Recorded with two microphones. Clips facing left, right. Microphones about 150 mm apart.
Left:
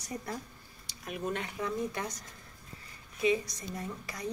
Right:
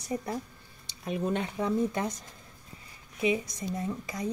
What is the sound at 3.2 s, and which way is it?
A woman's voice, 20° right (ahead or behind).